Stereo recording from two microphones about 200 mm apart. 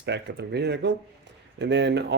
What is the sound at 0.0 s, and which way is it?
Speech, 55° right (ahead or behind).